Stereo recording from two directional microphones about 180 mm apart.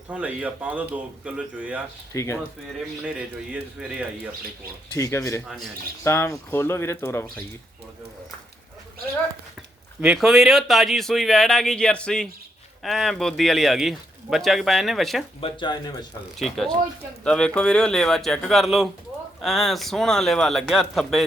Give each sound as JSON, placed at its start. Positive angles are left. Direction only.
{"t": 0.1, "sound": "speech", "side_deg": -10}
{"t": 2.1, "sound": "speech", "side_deg": 15}
{"t": 3.5, "sound": "speech", "side_deg": -5}
{"t": 4.9, "sound": "speech", "side_deg": 20}
{"t": 10.0, "sound": "speech", "side_deg": -5}
{"t": 15.4, "sound": "speech", "side_deg": 30}
{"t": 16.4, "sound": "speech", "side_deg": 0}